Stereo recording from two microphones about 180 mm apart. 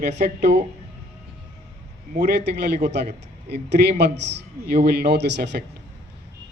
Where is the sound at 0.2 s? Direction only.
45° right (ahead or behind).